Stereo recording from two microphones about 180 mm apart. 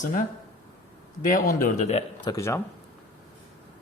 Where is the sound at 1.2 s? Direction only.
50° left (ahead or behind).